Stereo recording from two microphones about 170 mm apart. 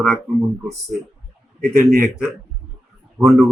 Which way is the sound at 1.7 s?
55° right (ahead or behind).